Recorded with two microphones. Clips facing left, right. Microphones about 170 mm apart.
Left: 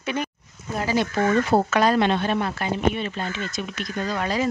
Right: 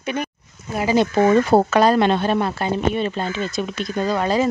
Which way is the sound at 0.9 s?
25° right (ahead or behind).